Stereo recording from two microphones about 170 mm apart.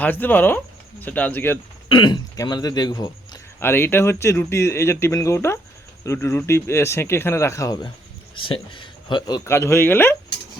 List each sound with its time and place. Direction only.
0.0 s a man's voice: 10° left (ahead or behind)
1.9 s a man's voice: 25° left (ahead or behind)
8.4 s speech: 30° left (ahead or behind); by 10.2 s 10° left (ahead or behind)